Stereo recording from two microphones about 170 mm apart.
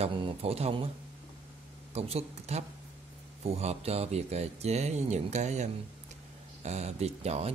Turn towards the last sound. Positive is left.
turn(degrees=-40)  # may be behind; listen again after turning